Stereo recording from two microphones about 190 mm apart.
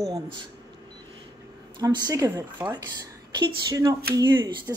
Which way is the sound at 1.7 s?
20° right (ahead or behind).